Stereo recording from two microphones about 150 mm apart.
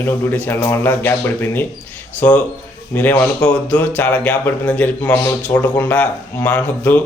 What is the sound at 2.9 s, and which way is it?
Speech, 10° left (ahead or behind).